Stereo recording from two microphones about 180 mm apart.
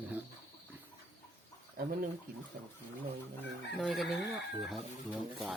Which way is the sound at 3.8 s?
Centre (ahead or behind).